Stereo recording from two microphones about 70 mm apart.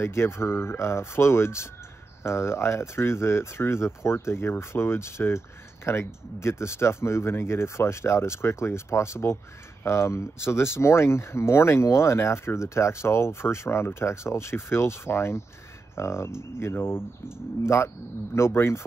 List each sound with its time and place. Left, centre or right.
0.0 s speech: left